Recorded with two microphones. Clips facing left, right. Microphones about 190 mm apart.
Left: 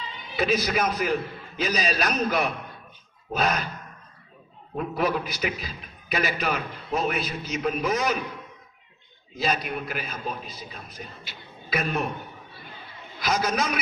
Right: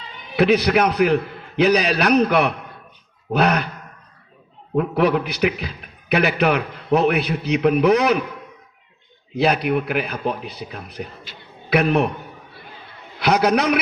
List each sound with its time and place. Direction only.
0.3 s a man's voice: 65° right (ahead or behind)
4.8 s a man's voice: 65° right (ahead or behind)
9.3 s a man's voice: 65° right (ahead or behind)
13.1 s a man's voice: 65° right (ahead or behind)